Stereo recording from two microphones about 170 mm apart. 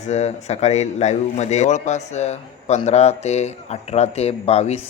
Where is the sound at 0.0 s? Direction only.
40° left (ahead or behind).